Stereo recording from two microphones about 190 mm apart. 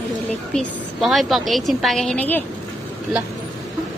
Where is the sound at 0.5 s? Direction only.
Centre (ahead or behind).